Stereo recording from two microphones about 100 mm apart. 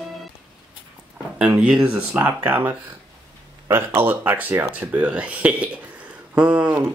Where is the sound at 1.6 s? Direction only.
10° right (ahead or behind).